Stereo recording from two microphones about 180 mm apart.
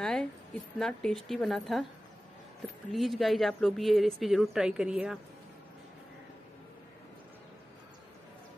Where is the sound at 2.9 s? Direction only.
Centre (ahead or behind).